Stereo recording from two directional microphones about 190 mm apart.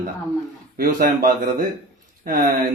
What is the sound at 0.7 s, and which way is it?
Speech, 50° right (ahead or behind).